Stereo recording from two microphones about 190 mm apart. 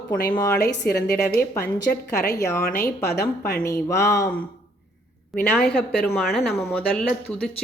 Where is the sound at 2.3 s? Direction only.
15° left (ahead or behind).